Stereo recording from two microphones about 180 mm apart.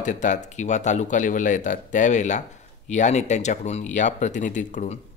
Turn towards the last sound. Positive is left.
turn(degrees=45)  # may be behind; listen again after turning